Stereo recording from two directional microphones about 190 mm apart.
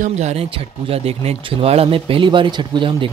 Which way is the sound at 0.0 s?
35° right (ahead or behind).